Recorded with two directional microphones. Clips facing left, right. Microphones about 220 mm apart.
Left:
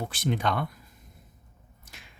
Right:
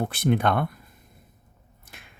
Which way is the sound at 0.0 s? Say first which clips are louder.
Right 6 dB; 55° right (ahead or behind).